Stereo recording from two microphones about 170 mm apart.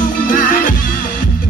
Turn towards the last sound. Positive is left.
turn(degrees=50)  # may be behind; listen again after turning